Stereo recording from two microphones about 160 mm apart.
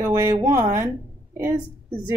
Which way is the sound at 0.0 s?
15° right (ahead or behind).